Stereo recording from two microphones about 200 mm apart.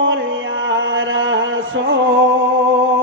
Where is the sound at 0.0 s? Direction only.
70° right (ahead or behind).